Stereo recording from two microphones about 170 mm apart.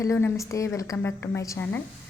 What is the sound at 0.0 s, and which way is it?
A woman's voice, 15° left (ahead or behind).